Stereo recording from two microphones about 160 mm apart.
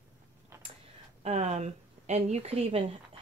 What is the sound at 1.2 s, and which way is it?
Speech, 45° right (ahead or behind).